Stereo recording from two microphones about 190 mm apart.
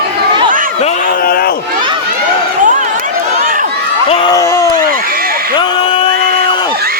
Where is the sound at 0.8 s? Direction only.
35° left (ahead or behind).